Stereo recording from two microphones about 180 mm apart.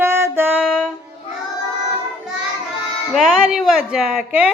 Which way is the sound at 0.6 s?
5° left (ahead or behind).